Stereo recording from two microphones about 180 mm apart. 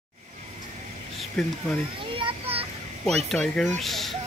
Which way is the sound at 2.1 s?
30° right (ahead or behind).